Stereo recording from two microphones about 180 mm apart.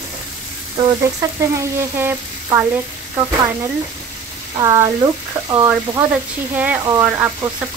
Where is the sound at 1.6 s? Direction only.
15° right (ahead or behind).